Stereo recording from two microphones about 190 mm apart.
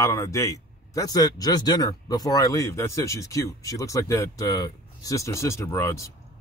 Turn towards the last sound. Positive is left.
turn(degrees=15)  # may be behind; listen again after turning